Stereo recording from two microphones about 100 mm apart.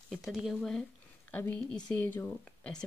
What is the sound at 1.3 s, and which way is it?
Speech, 15° left (ahead or behind).